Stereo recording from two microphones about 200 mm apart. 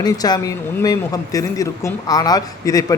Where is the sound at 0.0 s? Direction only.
20° left (ahead or behind).